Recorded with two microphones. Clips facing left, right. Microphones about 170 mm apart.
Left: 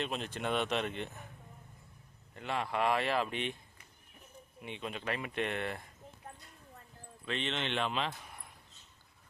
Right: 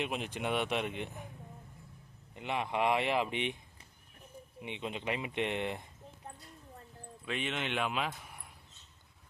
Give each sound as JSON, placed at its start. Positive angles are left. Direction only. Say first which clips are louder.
{"t": 0.0, "sound": "speech", "louder": "right 1 dB", "side_deg": -15}
{"t": 2.3, "sound": "speech", "louder": "right 1 dB", "side_deg": -15}
{"t": 4.6, "sound": "speech", "louder": "right 1 dB", "side_deg": -20}
{"t": 7.3, "sound": "speech", "louder": "even", "side_deg": -10}